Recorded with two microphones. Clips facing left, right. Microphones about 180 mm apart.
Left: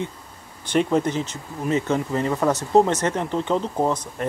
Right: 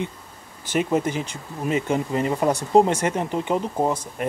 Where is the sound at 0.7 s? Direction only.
5° right (ahead or behind).